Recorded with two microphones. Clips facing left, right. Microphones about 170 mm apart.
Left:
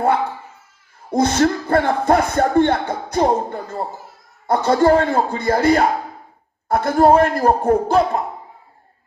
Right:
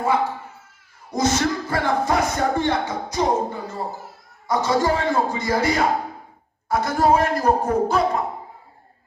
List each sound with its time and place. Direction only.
1.1 s speech: 55° left (ahead or behind)